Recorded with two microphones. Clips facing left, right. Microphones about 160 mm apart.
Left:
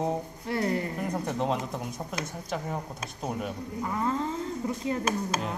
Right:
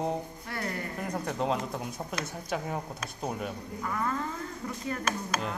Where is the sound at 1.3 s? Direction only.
Centre (ahead or behind).